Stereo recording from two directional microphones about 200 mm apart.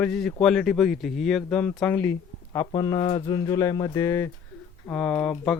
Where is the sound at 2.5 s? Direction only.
20° left (ahead or behind); by 5.5 s 5° left (ahead or behind).